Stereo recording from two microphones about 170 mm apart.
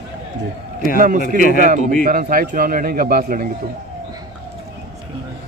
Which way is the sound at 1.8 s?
60° left (ahead or behind).